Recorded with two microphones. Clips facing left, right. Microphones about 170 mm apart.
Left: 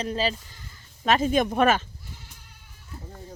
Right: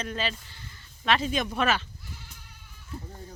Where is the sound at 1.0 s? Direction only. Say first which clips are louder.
Left 5 dB; 45° left (ahead or behind).